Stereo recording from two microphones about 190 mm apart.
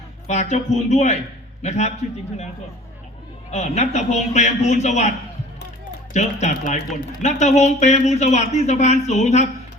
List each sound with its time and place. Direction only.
0.3 s speech: 35° left (ahead or behind)
3.5 s speech: 35° left (ahead or behind)
6.1 s speech: 40° left (ahead or behind)